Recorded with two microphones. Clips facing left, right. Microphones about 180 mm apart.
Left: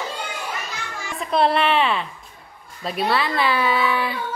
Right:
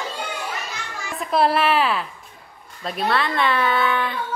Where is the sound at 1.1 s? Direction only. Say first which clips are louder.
Even; centre (ahead or behind).